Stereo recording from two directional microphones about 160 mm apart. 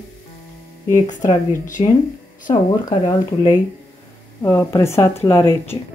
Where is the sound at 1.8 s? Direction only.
40° left (ahead or behind).